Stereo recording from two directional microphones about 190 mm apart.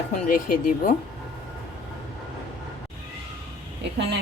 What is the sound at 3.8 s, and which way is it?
Speech, 65° right (ahead or behind).